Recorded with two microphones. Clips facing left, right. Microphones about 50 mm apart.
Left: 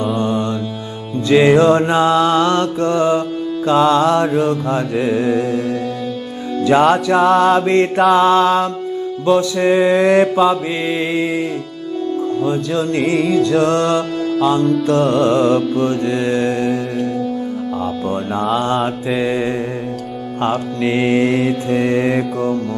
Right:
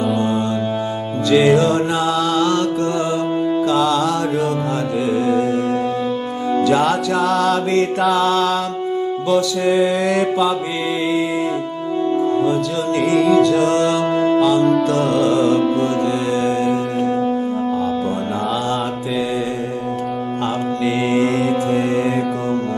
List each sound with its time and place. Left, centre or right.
1.3 s mantra: left
6.6 s mantra: left
13.0 s music: centre
13.5 s mantra: left
15.0 s music: centre
15.2 s mantra: left
15.5 s music: right
16.1 s mantra: left
20.8 s mantra: left